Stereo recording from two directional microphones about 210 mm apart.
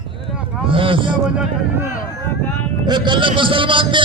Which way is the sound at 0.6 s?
25° right (ahead or behind).